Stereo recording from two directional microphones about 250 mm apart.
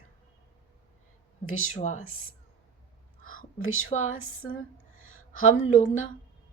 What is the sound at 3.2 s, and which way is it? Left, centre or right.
Whispering, left.